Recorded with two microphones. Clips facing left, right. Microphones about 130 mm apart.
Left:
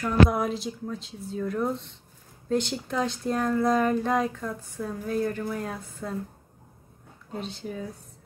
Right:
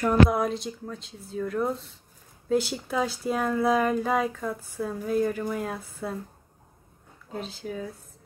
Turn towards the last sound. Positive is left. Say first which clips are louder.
# even
turn(degrees=0)  # may be behind; listen again after turning